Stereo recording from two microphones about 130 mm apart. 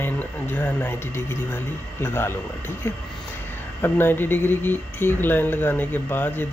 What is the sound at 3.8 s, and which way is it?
Speech, 15° left (ahead or behind).